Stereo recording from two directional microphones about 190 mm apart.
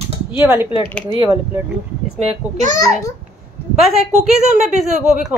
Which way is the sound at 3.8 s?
Centre (ahead or behind).